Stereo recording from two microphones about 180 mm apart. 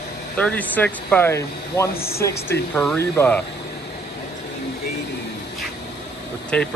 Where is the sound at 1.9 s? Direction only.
60° left (ahead or behind).